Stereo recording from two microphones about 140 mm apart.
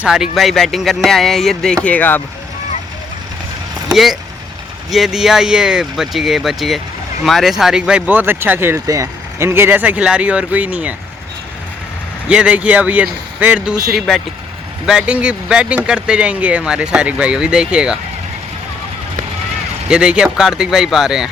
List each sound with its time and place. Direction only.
0.0 s speech: 5° right (ahead or behind); by 2.2 s 15° left (ahead or behind)
3.9 s speech: centre (ahead or behind)
12.3 s speech: 5° right (ahead or behind)
19.9 s speech: 5° right (ahead or behind)